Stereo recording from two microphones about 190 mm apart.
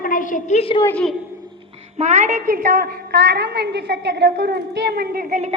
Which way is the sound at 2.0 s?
40° right (ahead or behind).